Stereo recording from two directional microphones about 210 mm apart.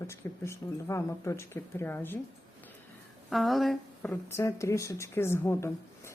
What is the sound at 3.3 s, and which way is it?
Speech, centre (ahead or behind).